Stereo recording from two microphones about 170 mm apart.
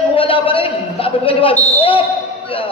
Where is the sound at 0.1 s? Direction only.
30° left (ahead or behind).